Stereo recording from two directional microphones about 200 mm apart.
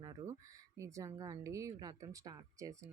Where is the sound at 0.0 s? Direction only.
15° right (ahead or behind).